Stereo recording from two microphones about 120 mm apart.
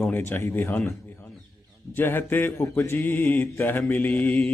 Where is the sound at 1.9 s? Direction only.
15° left (ahead or behind).